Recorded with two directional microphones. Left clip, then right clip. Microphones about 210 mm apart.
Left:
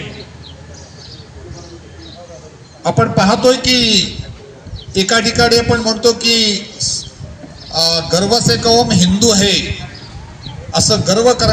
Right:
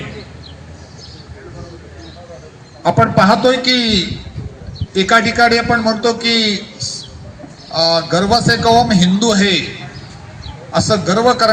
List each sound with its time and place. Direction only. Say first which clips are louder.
2.8 s a man's voice: right 2 dB; 35° left (ahead or behind)
4.9 s a man's voice: right 1 dB; 35° left (ahead or behind)
10.7 s a man's voice: left 1 dB; 35° left (ahead or behind)